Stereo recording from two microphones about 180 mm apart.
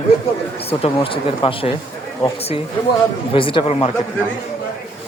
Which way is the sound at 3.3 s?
30° left (ahead or behind).